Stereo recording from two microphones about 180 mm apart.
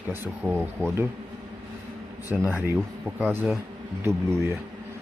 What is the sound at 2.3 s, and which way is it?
Speech, 10° right (ahead or behind).